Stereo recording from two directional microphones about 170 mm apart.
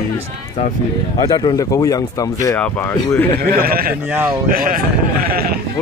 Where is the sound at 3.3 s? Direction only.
60° right (ahead or behind).